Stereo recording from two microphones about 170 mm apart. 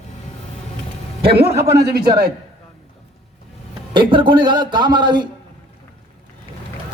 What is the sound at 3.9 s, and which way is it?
A man's voice, 30° right (ahead or behind).